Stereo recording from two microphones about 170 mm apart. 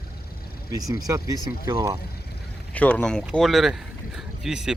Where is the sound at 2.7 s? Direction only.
10° left (ahead or behind).